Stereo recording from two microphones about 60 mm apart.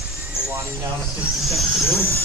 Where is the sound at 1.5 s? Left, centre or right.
Centre.